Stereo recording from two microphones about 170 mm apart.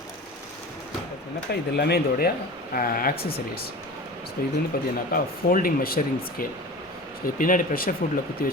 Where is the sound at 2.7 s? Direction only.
55° left (ahead or behind).